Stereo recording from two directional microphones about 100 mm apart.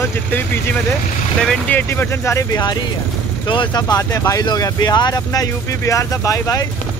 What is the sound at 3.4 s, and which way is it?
Speech, 55° left (ahead or behind).